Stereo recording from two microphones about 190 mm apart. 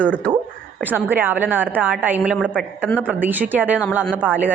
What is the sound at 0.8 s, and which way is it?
A woman's voice, 10° right (ahead or behind).